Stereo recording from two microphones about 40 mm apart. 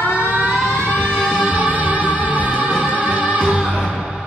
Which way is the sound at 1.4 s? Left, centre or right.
Right.